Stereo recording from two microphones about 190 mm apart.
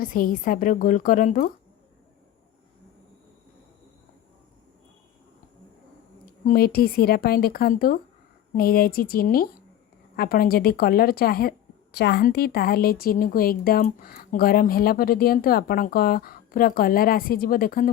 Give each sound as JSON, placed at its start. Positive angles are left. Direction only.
{"t": 0.0, "sound": "a woman's voice", "side_deg": 45}
{"t": 6.2, "sound": "a woman's voice", "side_deg": 50}